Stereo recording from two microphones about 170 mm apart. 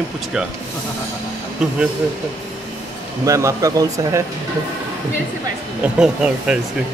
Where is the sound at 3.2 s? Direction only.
20° right (ahead or behind).